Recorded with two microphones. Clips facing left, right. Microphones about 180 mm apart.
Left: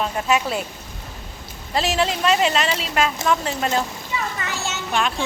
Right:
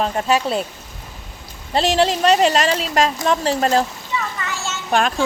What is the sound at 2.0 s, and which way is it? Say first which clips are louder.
Speech: right 5 dB; 35° right (ahead or behind).